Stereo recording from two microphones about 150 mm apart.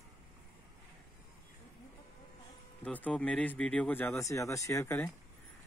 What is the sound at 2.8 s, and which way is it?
Speech, 10° left (ahead or behind).